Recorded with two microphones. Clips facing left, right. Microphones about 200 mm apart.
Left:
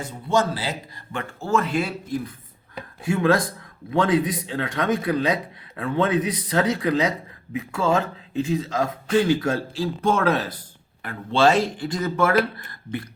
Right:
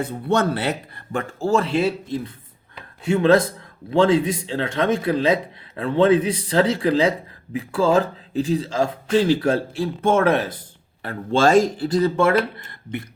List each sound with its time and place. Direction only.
0.0 s speech: 60° right (ahead or behind)
1.1 s a man's voice: 35° right (ahead or behind)
11.0 s a man's voice: 40° right (ahead or behind); by 13.1 s 25° right (ahead or behind)